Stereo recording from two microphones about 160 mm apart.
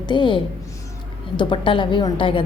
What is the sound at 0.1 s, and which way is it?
A woman's voice, 30° left (ahead or behind).